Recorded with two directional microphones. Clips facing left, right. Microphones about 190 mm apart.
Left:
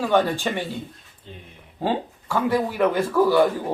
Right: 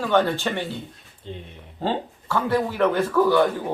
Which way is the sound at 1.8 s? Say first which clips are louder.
Left 1 dB; 10° left (ahead or behind).